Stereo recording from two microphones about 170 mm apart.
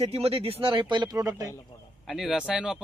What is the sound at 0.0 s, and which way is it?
Speech, 35° right (ahead or behind).